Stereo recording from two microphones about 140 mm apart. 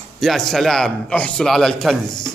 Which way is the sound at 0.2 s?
Centre (ahead or behind).